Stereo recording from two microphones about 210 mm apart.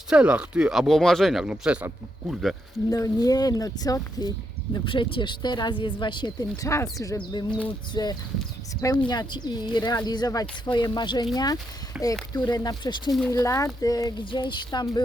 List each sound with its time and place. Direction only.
0.1 s speech: 5° right (ahead or behind)
2.9 s speech: 15° left (ahead or behind)
11.9 s speech: 5° right (ahead or behind)
12.3 s speech: 20° left (ahead or behind)
13.1 s speech: centre (ahead or behind)
13.3 s speech: 15° left (ahead or behind)